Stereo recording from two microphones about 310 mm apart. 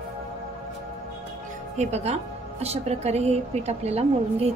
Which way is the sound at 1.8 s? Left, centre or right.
Right.